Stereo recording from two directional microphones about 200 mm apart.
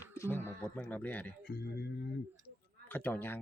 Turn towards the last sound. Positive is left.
turn(degrees=10)  # may be behind; listen again after turning